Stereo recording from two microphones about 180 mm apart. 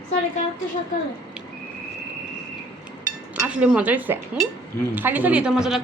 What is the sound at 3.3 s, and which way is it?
A woman's voice, 5° right (ahead or behind).